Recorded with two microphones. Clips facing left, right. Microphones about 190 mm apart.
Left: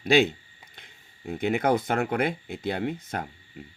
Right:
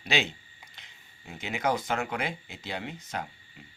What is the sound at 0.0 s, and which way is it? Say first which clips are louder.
Speech: left 9 dB; 50° left (ahead or behind).